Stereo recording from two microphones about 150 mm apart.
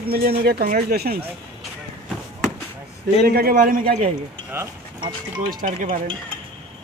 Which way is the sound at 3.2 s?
90° right.